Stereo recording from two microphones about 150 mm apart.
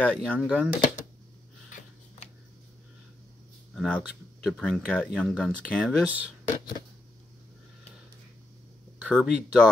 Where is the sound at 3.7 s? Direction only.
5° left (ahead or behind).